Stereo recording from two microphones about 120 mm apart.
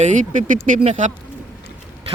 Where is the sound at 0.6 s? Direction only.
80° right.